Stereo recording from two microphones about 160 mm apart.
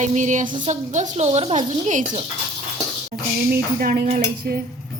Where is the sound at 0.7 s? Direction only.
50° right (ahead or behind).